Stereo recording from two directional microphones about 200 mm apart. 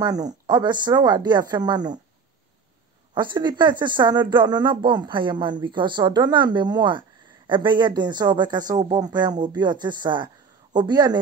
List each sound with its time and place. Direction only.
0.0 s speech: 20° right (ahead or behind)
3.2 s speech: 20° right (ahead or behind)